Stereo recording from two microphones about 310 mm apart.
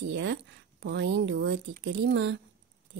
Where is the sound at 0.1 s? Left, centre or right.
Right.